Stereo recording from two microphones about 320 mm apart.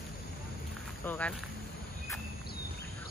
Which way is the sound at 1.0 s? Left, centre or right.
Centre.